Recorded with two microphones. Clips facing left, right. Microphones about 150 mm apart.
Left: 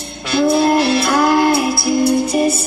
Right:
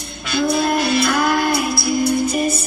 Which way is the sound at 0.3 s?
30° left (ahead or behind).